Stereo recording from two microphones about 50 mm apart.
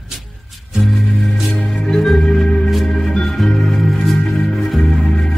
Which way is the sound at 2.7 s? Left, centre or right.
Centre.